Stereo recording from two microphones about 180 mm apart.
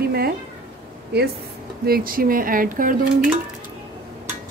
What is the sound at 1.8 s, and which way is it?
Speech, 55° right (ahead or behind).